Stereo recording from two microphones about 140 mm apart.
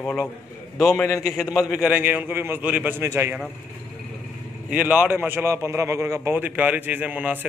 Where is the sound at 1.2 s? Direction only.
Centre (ahead or behind); by 3.3 s 20° right (ahead or behind).